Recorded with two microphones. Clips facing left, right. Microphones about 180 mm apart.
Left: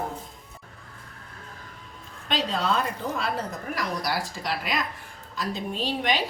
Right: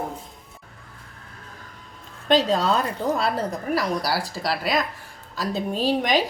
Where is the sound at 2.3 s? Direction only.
40° right (ahead or behind).